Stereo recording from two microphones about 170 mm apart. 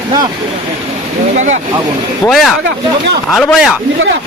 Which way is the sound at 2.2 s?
Centre (ahead or behind).